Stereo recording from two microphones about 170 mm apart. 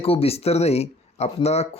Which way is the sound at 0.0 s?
35° left (ahead or behind).